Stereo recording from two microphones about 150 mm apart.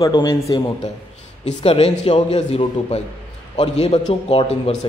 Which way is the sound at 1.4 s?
40° left (ahead or behind).